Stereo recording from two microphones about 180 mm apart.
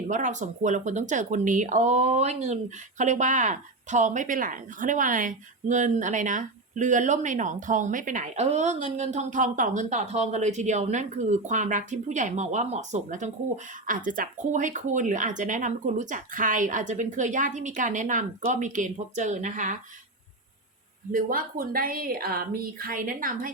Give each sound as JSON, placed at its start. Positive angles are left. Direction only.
{"t": 0.1, "sound": "speech", "side_deg": -45}
{"t": 21.1, "sound": "speech", "side_deg": -50}